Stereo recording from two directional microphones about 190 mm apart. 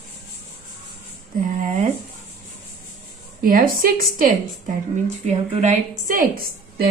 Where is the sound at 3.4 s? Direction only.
50° right (ahead or behind).